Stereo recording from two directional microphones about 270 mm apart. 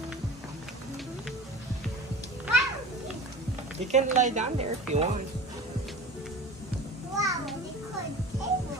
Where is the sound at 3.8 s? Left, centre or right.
Right.